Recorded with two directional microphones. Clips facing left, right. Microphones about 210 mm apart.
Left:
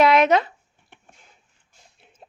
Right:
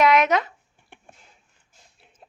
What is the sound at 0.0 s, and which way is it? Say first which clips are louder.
Speech: left 2 dB; 30° left (ahead or behind).